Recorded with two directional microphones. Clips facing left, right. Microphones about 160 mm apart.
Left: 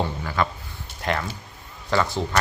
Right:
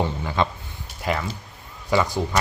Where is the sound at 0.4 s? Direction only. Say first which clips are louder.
Right 1 dB; 20° right (ahead or behind).